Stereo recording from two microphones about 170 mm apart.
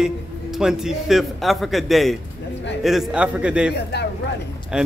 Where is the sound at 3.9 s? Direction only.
75° left (ahead or behind).